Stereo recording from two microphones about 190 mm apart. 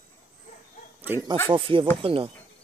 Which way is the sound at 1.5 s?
25° right (ahead or behind).